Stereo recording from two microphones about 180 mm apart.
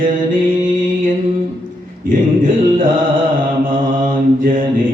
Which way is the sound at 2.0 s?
50° right (ahead or behind).